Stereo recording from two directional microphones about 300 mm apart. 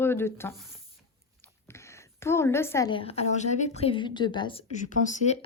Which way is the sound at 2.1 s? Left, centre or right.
Centre.